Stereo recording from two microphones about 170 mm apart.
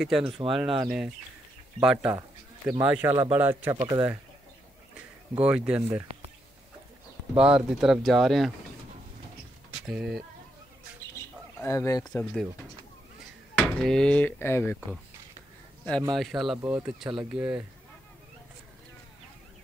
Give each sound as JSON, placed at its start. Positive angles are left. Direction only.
{"t": 0.0, "sound": "speech", "side_deg": -5}
{"t": 5.3, "sound": "speech", "side_deg": -10}
{"t": 7.3, "sound": "speech", "side_deg": -5}
{"t": 9.8, "sound": "speech", "side_deg": -5}
{"t": 11.6, "sound": "speech", "side_deg": 15}
{"t": 13.6, "sound": "speech", "side_deg": 5}
{"t": 16.2, "sound": "speech", "side_deg": 0}